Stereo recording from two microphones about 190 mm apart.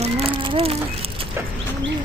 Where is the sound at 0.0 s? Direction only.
30° right (ahead or behind).